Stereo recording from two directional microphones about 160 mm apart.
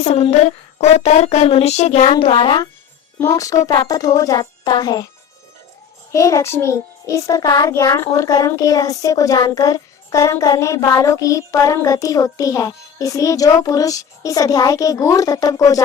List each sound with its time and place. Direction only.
0.0 s speech: 40° left (ahead or behind)
3.2 s child singing: 20° left (ahead or behind)
6.1 s child singing: 20° left (ahead or behind)